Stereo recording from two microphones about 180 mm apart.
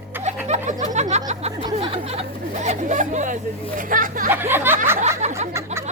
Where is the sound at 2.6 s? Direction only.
45° right (ahead or behind).